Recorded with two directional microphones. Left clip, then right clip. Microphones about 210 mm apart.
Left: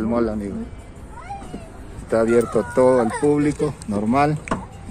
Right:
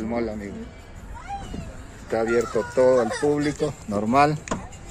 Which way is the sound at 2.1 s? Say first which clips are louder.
Left 5 dB; 20° left (ahead or behind).